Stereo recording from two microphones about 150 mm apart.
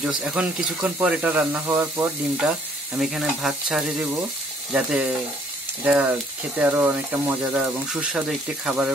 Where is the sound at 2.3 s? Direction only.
5° right (ahead or behind).